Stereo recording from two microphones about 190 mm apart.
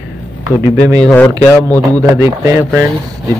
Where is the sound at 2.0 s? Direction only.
15° right (ahead or behind).